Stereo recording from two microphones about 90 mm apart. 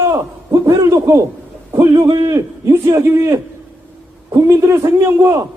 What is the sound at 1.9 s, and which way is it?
A man's voice, 50° right (ahead or behind).